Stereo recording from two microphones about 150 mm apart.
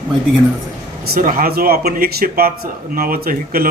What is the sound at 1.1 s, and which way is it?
Speech, 70° right (ahead or behind).